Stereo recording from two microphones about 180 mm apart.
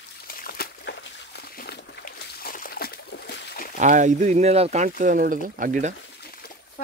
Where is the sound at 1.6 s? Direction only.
55° left (ahead or behind).